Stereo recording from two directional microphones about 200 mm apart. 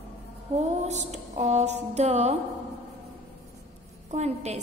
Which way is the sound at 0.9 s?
35° right (ahead or behind).